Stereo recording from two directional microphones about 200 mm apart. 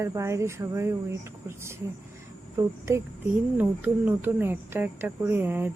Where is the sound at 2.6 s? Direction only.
15° right (ahead or behind).